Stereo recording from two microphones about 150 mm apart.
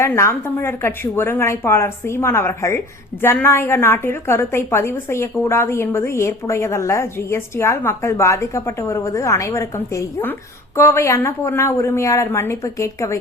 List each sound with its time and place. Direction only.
0.0 s a woman's voice: 15° left (ahead or behind)